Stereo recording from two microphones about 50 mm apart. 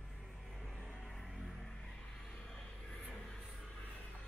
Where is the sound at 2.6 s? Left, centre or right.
Left.